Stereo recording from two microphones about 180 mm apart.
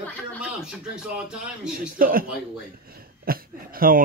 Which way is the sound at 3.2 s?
55° right (ahead or behind).